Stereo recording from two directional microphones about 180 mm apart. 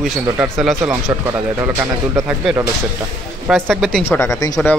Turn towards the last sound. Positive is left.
turn(degrees=15)  # may be behind; listen again after turning